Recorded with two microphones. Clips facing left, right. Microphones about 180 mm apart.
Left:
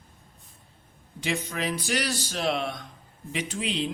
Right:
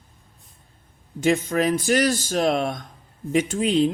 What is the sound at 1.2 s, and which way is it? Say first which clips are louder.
Speech: right 10 dB; 50° right (ahead or behind).